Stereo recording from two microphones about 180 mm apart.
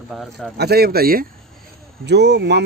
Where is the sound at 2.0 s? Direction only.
70° right (ahead or behind).